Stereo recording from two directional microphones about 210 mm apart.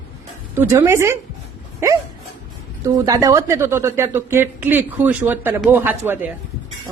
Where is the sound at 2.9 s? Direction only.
15° right (ahead or behind).